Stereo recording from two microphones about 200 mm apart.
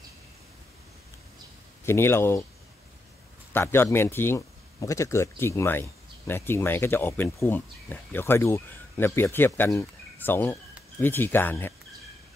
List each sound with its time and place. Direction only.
1.9 s speech: 10° left (ahead or behind)
3.5 s speech: 10° left (ahead or behind)